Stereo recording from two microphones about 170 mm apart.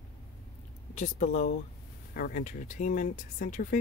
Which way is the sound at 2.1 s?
55° left (ahead or behind).